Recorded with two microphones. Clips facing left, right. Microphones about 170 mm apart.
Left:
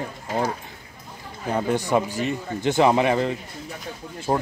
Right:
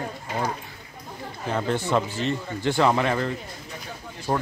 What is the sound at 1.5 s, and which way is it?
Speech, 15° left (ahead or behind).